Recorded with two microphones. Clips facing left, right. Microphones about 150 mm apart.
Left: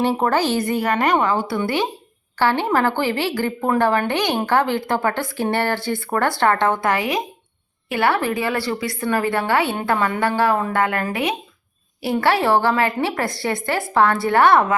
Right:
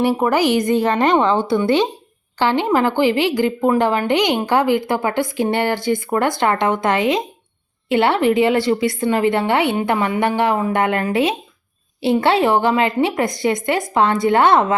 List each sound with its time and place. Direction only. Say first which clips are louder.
0.2 s a woman's voice: right 3 dB; 15° right (ahead or behind)